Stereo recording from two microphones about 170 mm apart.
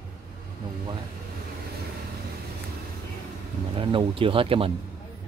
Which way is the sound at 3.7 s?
30° right (ahead or behind).